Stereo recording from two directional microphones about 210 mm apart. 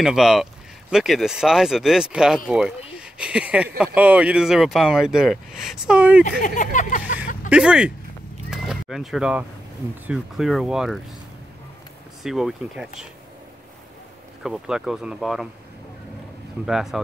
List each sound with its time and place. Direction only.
0.0 s speech: centre (ahead or behind)
6.4 s a sound: 40° left (ahead or behind)
7.4 s speech: 5° right (ahead or behind)
12.2 s speech: centre (ahead or behind)
14.4 s speech: centre (ahead or behind)
16.6 s speech: centre (ahead or behind)